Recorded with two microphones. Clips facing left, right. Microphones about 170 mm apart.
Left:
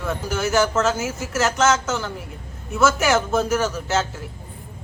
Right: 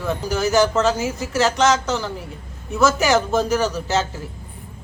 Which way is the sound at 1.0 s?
35° right (ahead or behind).